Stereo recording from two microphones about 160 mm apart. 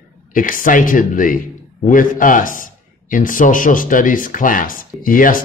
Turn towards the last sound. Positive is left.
turn(degrees=60)  # may be behind; listen again after turning